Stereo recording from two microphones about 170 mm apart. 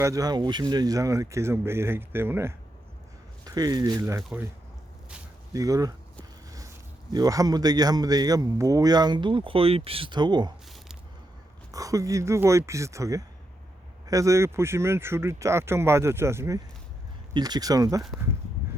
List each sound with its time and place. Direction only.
0.0 s speech: 20° right (ahead or behind)
4.3 s speech: 10° right (ahead or behind)
5.5 s a man's voice: 20° right (ahead or behind)
7.1 s a man's voice: 20° right (ahead or behind)
11.7 s a man's voice: 20° right (ahead or behind)